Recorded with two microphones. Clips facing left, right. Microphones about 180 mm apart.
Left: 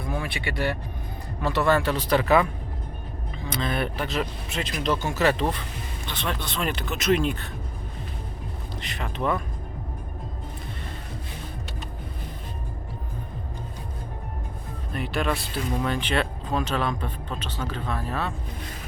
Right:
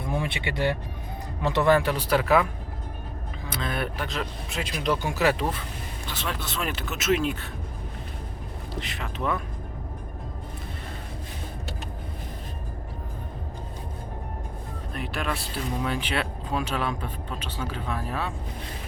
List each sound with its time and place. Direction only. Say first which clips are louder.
0.1 s speech: right 2 dB; 25° right (ahead or behind); by 2.5 s 5° right (ahead or behind)
3.5 s speech: left 3 dB; centre (ahead or behind)
4.6 s speech: left 1 dB; 10° right (ahead or behind)
8.8 s speech: left 3 dB; centre (ahead or behind)
14.9 s speech: left 4 dB; centre (ahead or behind)